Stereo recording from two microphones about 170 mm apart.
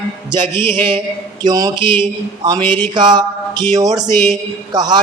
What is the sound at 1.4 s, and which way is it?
A man's voice, 20° right (ahead or behind).